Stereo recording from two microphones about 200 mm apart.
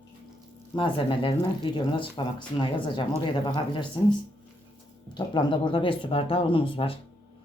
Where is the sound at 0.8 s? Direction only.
25° left (ahead or behind).